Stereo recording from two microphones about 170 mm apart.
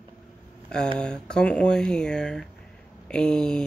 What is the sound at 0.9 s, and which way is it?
Speech, 5° left (ahead or behind).